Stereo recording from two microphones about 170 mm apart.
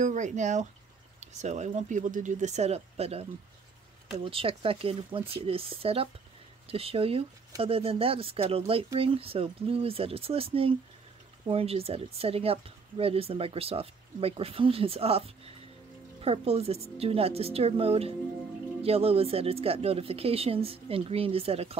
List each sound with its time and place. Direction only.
0.0 s speech: 45° right (ahead or behind)